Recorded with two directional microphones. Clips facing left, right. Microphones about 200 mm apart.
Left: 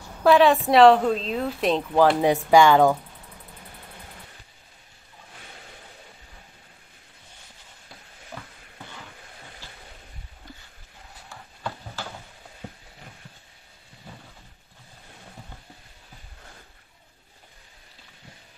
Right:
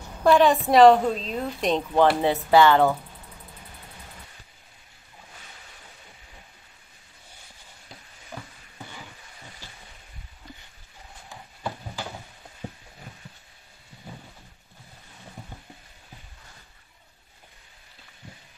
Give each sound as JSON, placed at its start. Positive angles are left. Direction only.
{"t": 0.2, "sound": "a woman's voice", "side_deg": 0}
{"t": 2.2, "sound": "speech", "side_deg": 15}
{"t": 8.3, "sound": "a sound", "side_deg": -15}
{"t": 11.2, "sound": "clip-clop", "side_deg": -15}